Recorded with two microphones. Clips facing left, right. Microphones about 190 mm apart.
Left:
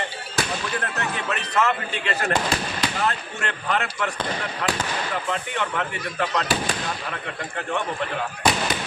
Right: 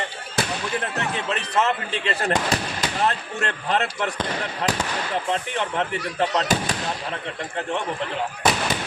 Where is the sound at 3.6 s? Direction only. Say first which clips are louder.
Right 1 dB; 35° right (ahead or behind).